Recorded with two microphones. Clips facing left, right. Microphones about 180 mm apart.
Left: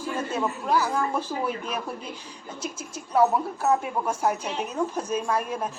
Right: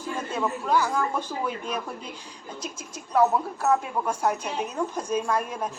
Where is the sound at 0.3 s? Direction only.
5° left (ahead or behind).